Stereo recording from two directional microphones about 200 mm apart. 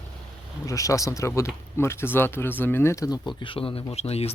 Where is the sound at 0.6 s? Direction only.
15° left (ahead or behind).